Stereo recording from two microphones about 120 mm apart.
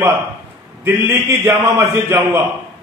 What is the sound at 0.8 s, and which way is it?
A man's voice, 20° right (ahead or behind).